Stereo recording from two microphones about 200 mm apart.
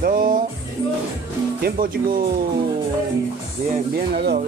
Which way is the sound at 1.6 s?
50° right (ahead or behind).